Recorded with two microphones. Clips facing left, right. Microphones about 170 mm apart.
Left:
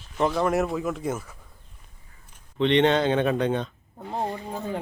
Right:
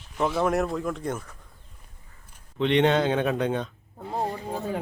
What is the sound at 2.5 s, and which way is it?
Speech, 10° right (ahead or behind).